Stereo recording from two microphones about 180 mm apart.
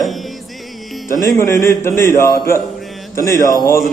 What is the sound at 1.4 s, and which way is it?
Speech, 15° left (ahead or behind).